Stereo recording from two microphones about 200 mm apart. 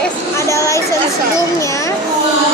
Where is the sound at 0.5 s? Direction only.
15° left (ahead or behind).